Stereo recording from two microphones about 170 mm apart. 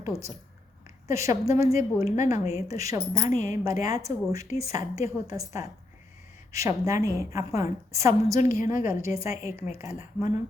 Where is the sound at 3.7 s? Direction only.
55° left (ahead or behind).